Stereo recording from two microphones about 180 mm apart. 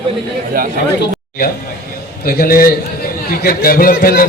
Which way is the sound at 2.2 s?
55° left (ahead or behind).